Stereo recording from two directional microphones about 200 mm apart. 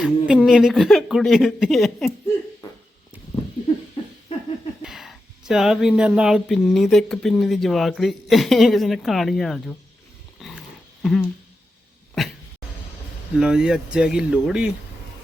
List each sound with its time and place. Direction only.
0.0 s speech: 5° right (ahead or behind)
4.8 s speech: centre (ahead or behind)
10.4 s dog: centre (ahead or behind)
11.0 s speech: centre (ahead or behind)
13.3 s speech: 5° right (ahead or behind)